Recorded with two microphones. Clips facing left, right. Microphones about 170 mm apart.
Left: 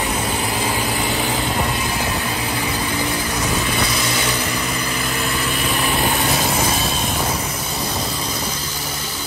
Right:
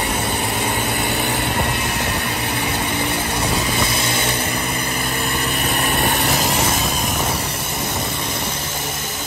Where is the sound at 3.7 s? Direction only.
25° right (ahead or behind).